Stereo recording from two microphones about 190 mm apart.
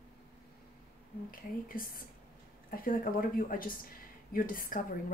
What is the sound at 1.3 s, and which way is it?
Speech, 50° left (ahead or behind).